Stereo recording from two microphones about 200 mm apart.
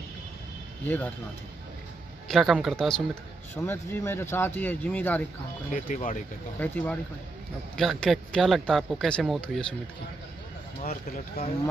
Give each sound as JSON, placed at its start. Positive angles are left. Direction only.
{"t": 0.8, "sound": "speech", "side_deg": 10}
{"t": 2.2, "sound": "speech", "side_deg": 0}
{"t": 5.7, "sound": "speech", "side_deg": 40}
{"t": 6.6, "sound": "speech", "side_deg": 10}
{"t": 10.8, "sound": "speech", "side_deg": 45}